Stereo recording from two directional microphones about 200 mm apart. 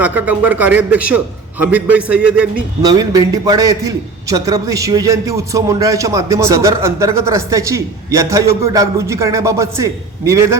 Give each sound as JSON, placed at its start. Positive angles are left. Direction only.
{"t": 0.0, "sound": "a man's voice", "side_deg": -10}
{"t": 2.8, "sound": "a man's voice", "side_deg": -20}